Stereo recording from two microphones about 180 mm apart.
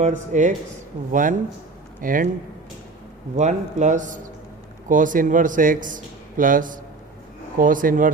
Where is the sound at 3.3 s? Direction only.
40° right (ahead or behind).